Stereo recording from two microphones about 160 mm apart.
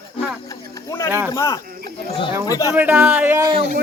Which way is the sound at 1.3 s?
20° left (ahead or behind).